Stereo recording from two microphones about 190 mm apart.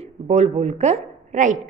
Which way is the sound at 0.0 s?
35° right (ahead or behind).